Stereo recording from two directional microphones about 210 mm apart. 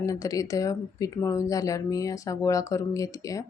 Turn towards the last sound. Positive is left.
turn(degrees=15)  # may be behind; listen again after turning